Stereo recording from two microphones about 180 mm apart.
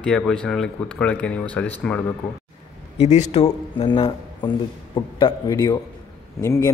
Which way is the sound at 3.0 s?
40° left (ahead or behind).